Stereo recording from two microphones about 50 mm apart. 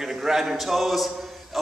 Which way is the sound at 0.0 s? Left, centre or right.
Centre.